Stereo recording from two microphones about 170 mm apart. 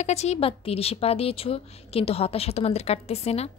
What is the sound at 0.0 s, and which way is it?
Speech, 40° left (ahead or behind).